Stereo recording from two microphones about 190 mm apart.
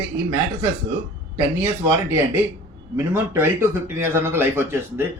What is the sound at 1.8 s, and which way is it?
A man's voice, 15° right (ahead or behind).